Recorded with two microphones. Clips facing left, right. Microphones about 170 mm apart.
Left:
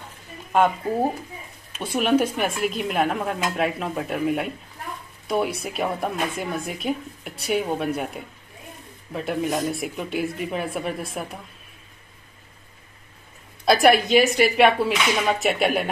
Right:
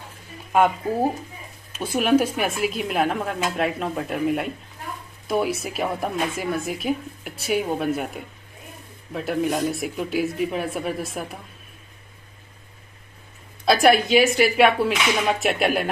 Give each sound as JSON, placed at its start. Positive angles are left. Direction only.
{"t": 1.7, "sound": "speech", "side_deg": 0}
{"t": 13.7, "sound": "speech", "side_deg": 0}